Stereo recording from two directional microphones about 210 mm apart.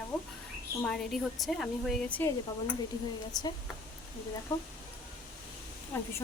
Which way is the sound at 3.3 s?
20° left (ahead or behind).